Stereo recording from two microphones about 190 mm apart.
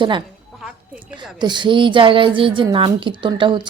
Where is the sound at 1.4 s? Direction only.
25° right (ahead or behind).